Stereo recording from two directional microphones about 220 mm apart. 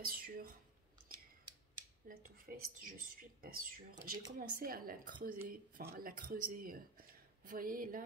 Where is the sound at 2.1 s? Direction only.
40° right (ahead or behind).